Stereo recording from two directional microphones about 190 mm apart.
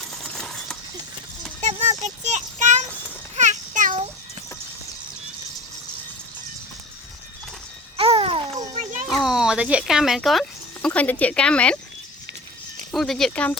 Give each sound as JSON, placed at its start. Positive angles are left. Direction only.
{"t": 0.2, "sound": "coin", "side_deg": 0}
{"t": 1.6, "sound": "child singing", "side_deg": -35}
{"t": 7.9, "sound": "a sound", "side_deg": -30}
{"t": 8.8, "sound": "children playing", "side_deg": -40}
{"t": 9.0, "sound": "speech", "side_deg": 0}
{"t": 12.9, "sound": "speech", "side_deg": 0}